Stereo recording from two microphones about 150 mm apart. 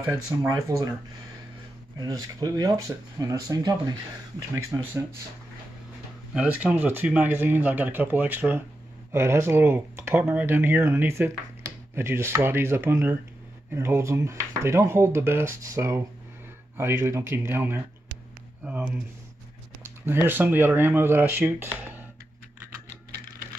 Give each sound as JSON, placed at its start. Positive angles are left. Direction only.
{"t": 0.0, "sound": "speech", "side_deg": -20}
{"t": 2.0, "sound": "speech", "side_deg": -25}
{"t": 6.3, "sound": "speech", "side_deg": -10}
{"t": 20.2, "sound": "speech", "side_deg": -15}